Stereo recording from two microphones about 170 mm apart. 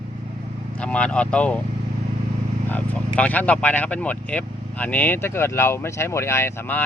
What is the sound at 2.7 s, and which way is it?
Speech, 10° left (ahead or behind).